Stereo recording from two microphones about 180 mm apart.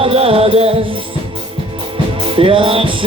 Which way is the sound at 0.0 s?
30° right (ahead or behind).